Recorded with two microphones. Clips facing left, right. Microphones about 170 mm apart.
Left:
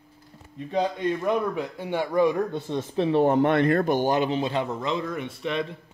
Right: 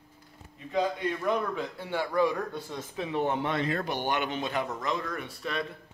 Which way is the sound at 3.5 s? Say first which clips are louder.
Left 9 dB; 55° left (ahead or behind).